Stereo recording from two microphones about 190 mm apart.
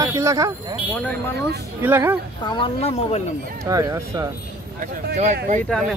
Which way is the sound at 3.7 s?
15° right (ahead or behind).